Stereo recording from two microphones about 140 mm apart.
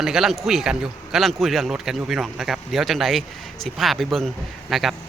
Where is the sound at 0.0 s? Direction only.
5° right (ahead or behind).